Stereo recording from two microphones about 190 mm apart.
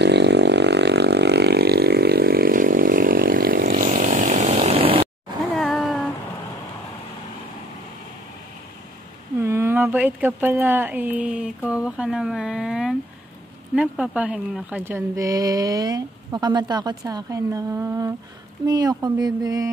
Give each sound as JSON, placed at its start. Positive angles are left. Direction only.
{"t": 0.0, "sound": "vehicle", "side_deg": -65}
{"t": 5.6, "sound": "a sound", "side_deg": 0}
{"t": 9.4, "sound": "speech", "side_deg": -15}